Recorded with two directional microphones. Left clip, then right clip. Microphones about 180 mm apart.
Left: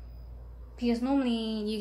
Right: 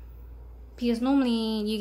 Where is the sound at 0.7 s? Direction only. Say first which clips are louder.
Right 3 dB; 35° right (ahead or behind).